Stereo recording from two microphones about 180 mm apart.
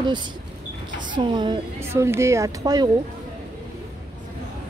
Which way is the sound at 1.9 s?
15° right (ahead or behind).